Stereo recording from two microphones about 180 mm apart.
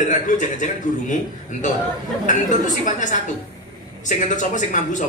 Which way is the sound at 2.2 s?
45° left (ahead or behind).